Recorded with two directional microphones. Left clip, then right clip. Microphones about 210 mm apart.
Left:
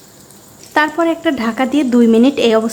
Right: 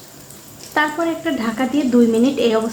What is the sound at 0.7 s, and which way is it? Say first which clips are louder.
Frying: left 5 dB; 30° left (ahead or behind).